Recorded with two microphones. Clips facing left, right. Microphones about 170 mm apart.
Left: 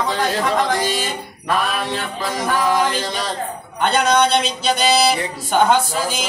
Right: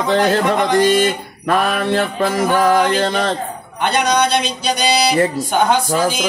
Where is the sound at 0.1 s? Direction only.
60° right (ahead or behind).